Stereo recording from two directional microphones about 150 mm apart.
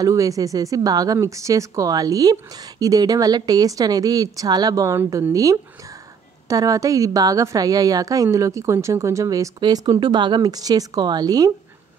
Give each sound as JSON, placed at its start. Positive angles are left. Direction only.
{"t": 0.0, "sound": "speech", "side_deg": -20}